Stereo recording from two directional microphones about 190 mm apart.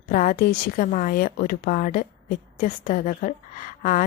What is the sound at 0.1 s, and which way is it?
A woman's voice, 45° left (ahead or behind).